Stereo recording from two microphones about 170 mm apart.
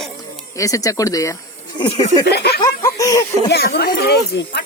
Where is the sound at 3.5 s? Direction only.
65° left (ahead or behind).